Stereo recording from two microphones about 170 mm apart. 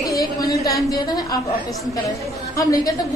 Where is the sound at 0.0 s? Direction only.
20° left (ahead or behind).